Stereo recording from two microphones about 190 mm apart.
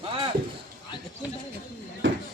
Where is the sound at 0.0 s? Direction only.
25° right (ahead or behind).